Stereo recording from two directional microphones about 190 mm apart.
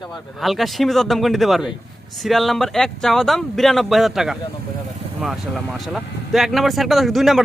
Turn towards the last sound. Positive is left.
turn(degrees=0)  # may be behind; listen again after turning